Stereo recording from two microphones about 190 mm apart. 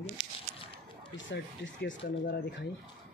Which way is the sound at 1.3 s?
65° left (ahead or behind).